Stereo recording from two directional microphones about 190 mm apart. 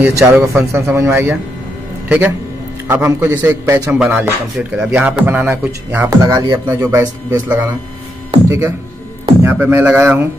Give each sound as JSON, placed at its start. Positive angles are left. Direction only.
{"t": 0.0, "sound": "a man's voice", "side_deg": -10}